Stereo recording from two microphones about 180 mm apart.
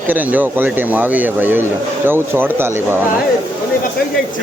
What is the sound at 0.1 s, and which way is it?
Speech, 10° right (ahead or behind).